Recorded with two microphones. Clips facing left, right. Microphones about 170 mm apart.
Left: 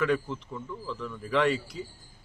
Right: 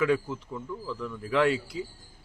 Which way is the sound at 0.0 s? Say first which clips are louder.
Right 2 dB; 5° right (ahead or behind).